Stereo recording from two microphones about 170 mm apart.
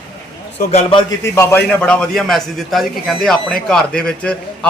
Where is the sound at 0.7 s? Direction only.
35° left (ahead or behind).